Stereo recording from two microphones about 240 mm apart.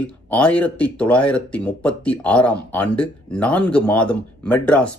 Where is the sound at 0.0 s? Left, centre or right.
Centre.